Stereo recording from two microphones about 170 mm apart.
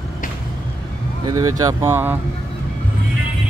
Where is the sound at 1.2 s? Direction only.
20° right (ahead or behind).